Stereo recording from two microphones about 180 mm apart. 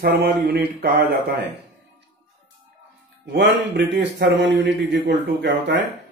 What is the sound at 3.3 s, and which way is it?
Mantra, 80° right.